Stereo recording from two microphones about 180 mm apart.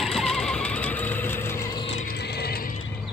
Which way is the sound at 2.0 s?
65° left (ahead or behind).